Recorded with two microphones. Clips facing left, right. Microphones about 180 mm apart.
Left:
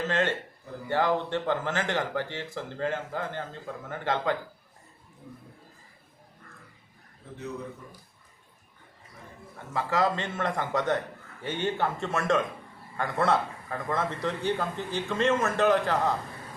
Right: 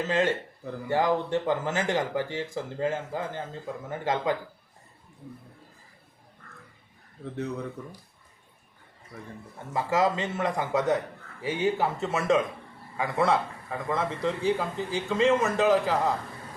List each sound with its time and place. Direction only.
0.1 s speech: 10° right (ahead or behind)
9.7 s a man's voice: 20° right (ahead or behind)
10.2 s a man's voice: 5° right (ahead or behind)